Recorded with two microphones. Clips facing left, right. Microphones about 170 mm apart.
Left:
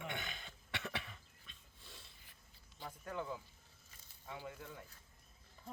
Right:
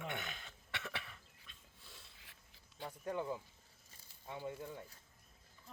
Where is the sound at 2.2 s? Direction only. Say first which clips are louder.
Right 1 dB; 90° right.